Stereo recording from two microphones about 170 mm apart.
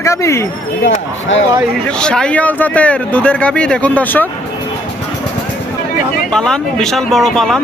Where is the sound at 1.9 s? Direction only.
5° left (ahead or behind).